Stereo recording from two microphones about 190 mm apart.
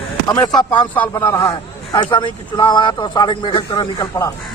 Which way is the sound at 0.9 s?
10° left (ahead or behind).